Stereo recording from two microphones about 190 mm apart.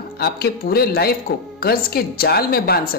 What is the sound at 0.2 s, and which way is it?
Speech, 55° left (ahead or behind).